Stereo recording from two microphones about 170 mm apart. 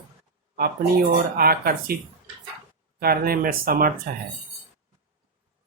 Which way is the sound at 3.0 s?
60° right (ahead or behind).